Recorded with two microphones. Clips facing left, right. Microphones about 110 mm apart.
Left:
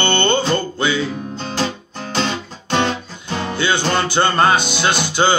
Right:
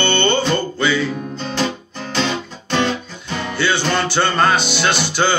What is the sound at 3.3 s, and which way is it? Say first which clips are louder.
Music: even; 20° left (ahead or behind).